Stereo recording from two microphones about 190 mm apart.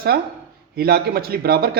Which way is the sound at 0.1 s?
60° right (ahead or behind).